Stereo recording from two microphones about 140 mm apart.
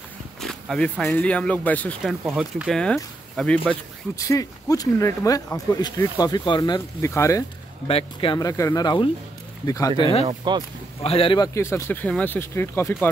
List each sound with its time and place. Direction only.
0.4 s speech: 5° left (ahead or behind)
2.0 s speech: 5° right (ahead or behind)
4.2 s speech: 25° left (ahead or behind)
7.9 s speech: 40° left (ahead or behind)
8.4 s speech: 25° left (ahead or behind)
10.2 s speech: 30° right (ahead or behind)
11.0 s a man's voice: 45° left (ahead or behind)
11.3 s speech: 25° left (ahead or behind)